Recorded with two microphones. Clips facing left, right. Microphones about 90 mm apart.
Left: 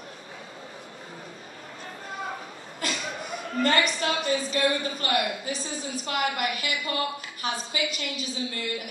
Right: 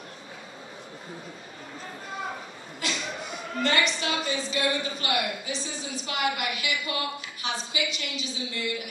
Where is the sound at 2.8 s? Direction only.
45° left (ahead or behind).